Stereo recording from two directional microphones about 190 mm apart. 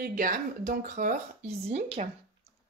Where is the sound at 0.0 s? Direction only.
50° right (ahead or behind).